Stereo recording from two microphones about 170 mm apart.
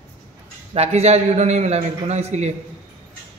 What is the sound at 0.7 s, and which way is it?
A man's voice, 40° right (ahead or behind).